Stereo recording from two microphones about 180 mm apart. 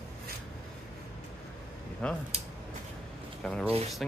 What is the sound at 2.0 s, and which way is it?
Speech, 5° left (ahead or behind).